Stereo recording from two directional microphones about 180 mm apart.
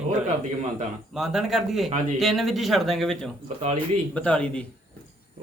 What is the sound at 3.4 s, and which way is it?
Speech, 35° right (ahead or behind).